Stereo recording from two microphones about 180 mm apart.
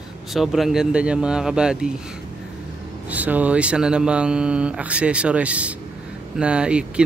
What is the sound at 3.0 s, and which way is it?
Speech, 10° right (ahead or behind).